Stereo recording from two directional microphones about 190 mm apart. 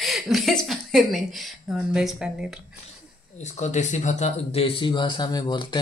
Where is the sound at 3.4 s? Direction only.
40° left (ahead or behind).